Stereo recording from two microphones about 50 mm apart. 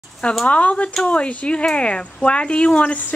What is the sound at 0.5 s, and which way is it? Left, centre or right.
Speech, left.